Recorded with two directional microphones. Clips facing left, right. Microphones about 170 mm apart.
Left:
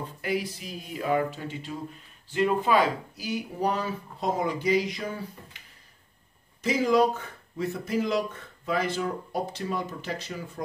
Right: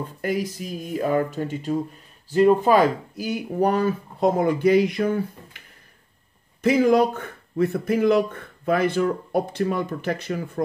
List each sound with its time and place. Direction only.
0.2 s speech: 45° right (ahead or behind)
6.6 s speech: 55° right (ahead or behind)